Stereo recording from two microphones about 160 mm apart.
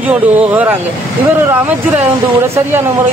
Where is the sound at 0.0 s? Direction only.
10° right (ahead or behind).